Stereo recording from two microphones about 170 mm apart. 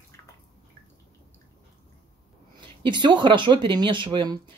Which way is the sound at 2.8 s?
25° right (ahead or behind).